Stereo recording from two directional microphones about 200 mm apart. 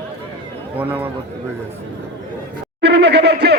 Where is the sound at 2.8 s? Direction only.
60° right (ahead or behind).